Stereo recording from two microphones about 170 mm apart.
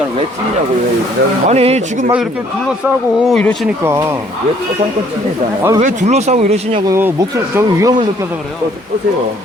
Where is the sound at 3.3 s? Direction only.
5° left (ahead or behind).